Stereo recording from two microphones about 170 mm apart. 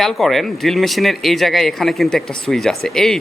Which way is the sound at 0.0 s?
Centre (ahead or behind).